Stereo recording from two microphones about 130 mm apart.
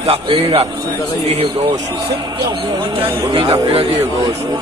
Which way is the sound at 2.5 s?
35° right (ahead or behind).